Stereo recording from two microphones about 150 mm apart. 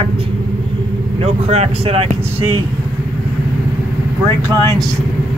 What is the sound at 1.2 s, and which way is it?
Speech, 45° right (ahead or behind).